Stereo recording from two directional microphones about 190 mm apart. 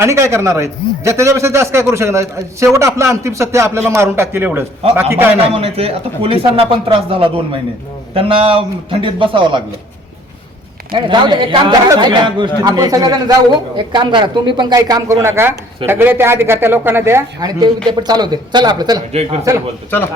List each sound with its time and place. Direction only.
0.0 s a man's voice: 15° right (ahead or behind)
5.5 s speech: 30° right (ahead or behind)
10.9 s a man's voice: 25° right (ahead or behind)